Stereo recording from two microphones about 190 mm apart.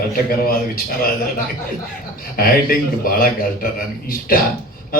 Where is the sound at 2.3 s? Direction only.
50° left (ahead or behind).